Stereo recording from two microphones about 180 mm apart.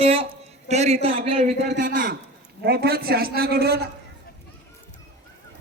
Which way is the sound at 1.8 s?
70° right (ahead or behind).